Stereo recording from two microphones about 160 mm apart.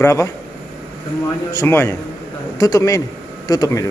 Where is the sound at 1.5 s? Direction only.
15° left (ahead or behind).